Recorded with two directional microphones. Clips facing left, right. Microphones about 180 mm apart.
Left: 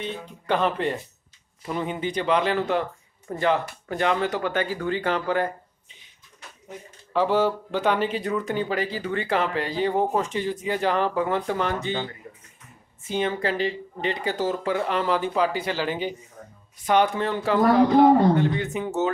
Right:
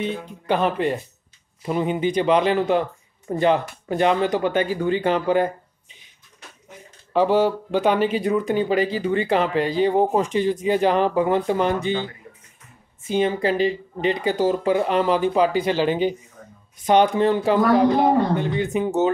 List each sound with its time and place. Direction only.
0.5 s speech: 10° right (ahead or behind)
7.1 s speech: 15° right (ahead or behind)
13.1 s speech: 15° right (ahead or behind)